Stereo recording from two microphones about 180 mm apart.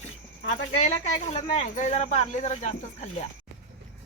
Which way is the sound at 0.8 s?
35° left (ahead or behind).